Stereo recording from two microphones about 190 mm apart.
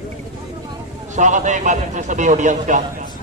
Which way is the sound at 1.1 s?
40° right (ahead or behind).